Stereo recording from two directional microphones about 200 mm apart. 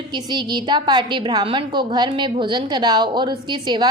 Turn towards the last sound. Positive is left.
turn(degrees=-20)  # may be behind; listen again after turning